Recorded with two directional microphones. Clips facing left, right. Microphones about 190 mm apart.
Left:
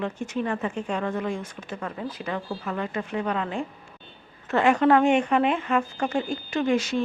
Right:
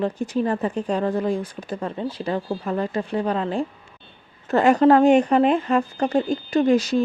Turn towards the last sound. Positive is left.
turn(degrees=-35)  # may be behind; listen again after turning